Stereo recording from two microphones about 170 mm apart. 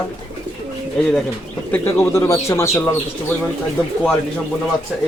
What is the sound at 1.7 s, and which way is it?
Speech, 15° left (ahead or behind).